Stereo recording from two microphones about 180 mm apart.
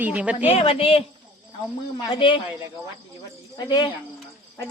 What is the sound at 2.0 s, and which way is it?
A man's voice, 30° left (ahead or behind).